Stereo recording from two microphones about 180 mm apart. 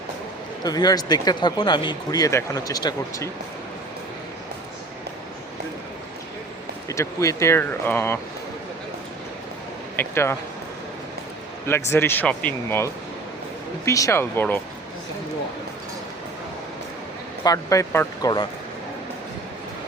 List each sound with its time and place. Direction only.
0.6 s speech: 20° left (ahead or behind)
6.8 s speech: 15° left (ahead or behind)
9.9 s speech: 10° left (ahead or behind)
11.6 s speech: 15° left (ahead or behind)
17.4 s speech: 20° left (ahead or behind)